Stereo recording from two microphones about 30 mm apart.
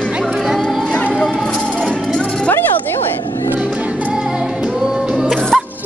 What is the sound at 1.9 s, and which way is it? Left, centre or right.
Music, left.